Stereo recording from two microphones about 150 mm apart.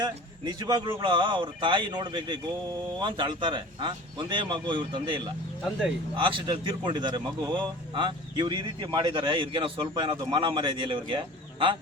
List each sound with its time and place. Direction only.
0.0 s speech: 30° right (ahead or behind)